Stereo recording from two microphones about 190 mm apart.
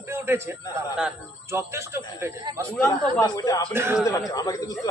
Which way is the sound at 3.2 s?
20° left (ahead or behind).